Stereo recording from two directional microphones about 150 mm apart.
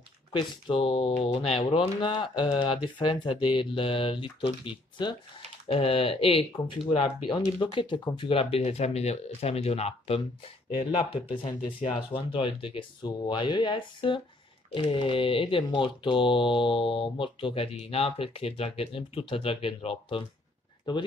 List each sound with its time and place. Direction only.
0.7 s speech: 35° left (ahead or behind)